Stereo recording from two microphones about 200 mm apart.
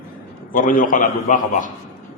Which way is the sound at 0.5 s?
40° left (ahead or behind).